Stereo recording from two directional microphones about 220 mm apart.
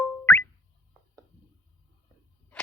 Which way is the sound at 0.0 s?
5° left (ahead or behind).